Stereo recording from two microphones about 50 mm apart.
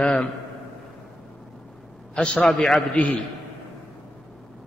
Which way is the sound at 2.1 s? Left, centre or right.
Left.